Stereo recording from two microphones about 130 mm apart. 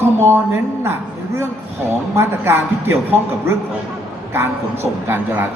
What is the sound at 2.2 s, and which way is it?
Speech, 15° right (ahead or behind).